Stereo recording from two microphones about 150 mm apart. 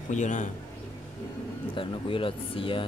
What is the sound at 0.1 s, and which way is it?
Speech, 55° left (ahead or behind).